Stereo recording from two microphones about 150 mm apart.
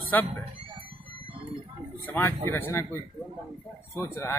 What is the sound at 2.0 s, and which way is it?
A man's voice, 15° left (ahead or behind).